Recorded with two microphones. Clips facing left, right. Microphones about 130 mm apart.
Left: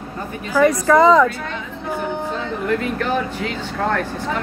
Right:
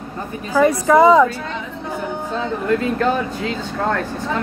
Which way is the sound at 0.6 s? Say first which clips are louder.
Right 1 dB; 5° right (ahead or behind).